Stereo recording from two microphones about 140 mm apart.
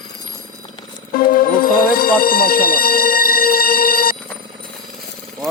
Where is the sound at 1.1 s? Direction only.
90° left.